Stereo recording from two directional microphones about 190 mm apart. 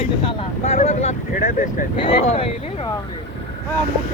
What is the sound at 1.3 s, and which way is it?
Vehicle, 45° left (ahead or behind).